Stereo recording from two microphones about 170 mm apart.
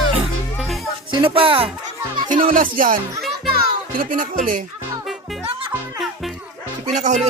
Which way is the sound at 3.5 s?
60° right (ahead or behind).